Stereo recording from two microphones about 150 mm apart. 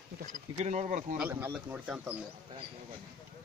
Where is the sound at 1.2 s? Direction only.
10° right (ahead or behind).